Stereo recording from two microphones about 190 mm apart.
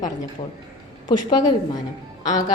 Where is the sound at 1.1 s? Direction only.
20° left (ahead or behind).